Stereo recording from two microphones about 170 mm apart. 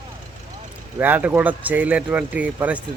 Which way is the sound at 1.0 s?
10° right (ahead or behind).